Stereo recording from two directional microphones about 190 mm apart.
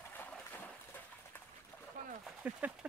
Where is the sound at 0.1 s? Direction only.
10° left (ahead or behind).